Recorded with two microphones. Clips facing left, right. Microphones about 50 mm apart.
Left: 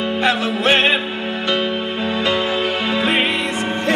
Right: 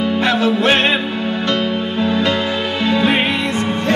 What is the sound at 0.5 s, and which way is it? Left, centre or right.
Music, centre.